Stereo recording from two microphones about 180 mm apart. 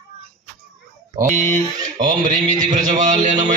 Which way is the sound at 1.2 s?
45° right (ahead or behind).